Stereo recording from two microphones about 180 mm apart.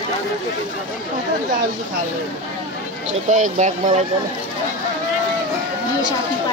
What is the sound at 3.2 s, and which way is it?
Speech, 45° right (ahead or behind).